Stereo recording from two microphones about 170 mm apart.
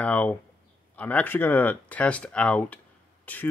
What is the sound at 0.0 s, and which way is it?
Speech, 10° left (ahead or behind).